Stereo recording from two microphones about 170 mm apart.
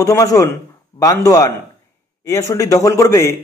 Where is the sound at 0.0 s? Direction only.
20° left (ahead or behind).